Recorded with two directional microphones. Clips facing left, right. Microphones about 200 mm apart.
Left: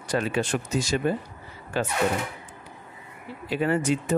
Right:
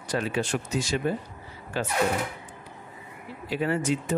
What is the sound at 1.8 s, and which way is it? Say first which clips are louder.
Speech: left 3 dB; 55° left (ahead or behind).